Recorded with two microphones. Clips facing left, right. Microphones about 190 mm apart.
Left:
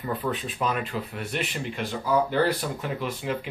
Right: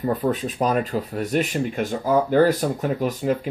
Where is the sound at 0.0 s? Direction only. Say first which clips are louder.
Right 7 dB; 40° right (ahead or behind).